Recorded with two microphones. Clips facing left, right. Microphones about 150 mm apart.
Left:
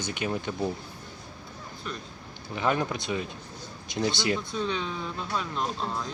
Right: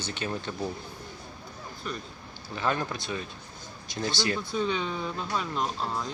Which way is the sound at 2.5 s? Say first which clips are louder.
Left 2 dB; 15° left (ahead or behind).